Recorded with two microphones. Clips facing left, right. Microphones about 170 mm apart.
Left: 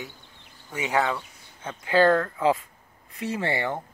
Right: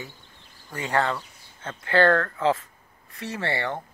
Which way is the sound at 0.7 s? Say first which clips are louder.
Even; 5° left (ahead or behind).